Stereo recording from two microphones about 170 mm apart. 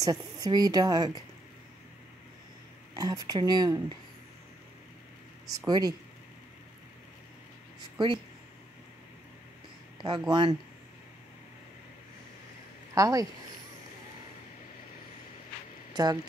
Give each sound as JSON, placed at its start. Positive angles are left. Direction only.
{"t": 0.0, "sound": "a woman's voice", "side_deg": -20}
{"t": 2.9, "sound": "a woman's voice", "side_deg": -20}
{"t": 5.7, "sound": "a woman's voice", "side_deg": -25}
{"t": 10.0, "sound": "a woman's voice", "side_deg": -25}
{"t": 12.9, "sound": "a woman's voice", "side_deg": -20}
{"t": 15.9, "sound": "speech", "side_deg": -25}